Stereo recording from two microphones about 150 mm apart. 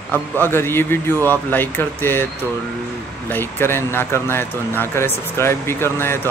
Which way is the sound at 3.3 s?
15° left (ahead or behind).